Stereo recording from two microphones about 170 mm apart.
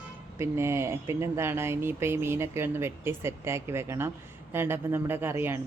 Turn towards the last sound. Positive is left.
turn(degrees=-15)  # may be behind; listen again after turning